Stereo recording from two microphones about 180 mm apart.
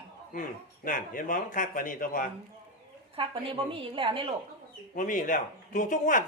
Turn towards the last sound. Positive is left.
turn(degrees=45)  # may be behind; listen again after turning